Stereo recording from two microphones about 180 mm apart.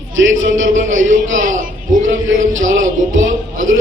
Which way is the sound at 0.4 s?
90° right.